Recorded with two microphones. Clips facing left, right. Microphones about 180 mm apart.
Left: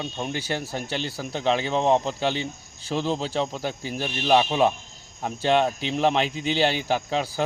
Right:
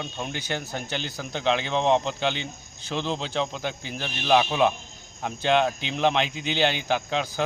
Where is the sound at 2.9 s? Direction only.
5° left (ahead or behind).